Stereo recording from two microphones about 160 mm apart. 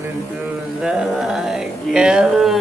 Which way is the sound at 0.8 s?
5° right (ahead or behind).